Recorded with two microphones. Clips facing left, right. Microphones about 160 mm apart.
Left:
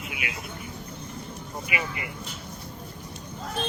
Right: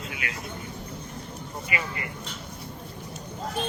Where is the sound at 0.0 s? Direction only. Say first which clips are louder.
Even; 15° left (ahead or behind).